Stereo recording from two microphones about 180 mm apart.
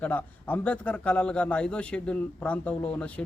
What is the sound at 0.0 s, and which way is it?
A man's voice, 10° left (ahead or behind).